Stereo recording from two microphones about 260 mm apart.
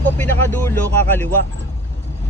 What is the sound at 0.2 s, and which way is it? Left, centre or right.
Speech, centre.